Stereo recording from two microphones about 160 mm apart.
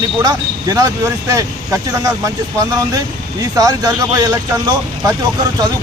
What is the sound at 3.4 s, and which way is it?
A man's voice, 25° right (ahead or behind).